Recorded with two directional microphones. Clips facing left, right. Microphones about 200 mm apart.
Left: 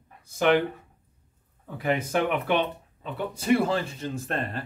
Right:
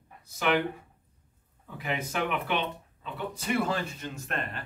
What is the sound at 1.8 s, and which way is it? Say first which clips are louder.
Speech: left 6 dB; 45° left (ahead or behind).